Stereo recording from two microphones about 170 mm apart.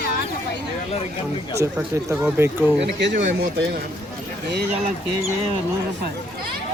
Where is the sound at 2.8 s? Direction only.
90° right.